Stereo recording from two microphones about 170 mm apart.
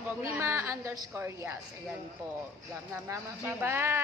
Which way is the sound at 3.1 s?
15° right (ahead or behind).